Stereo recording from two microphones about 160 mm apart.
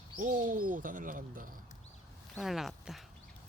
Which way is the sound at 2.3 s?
Centre (ahead or behind).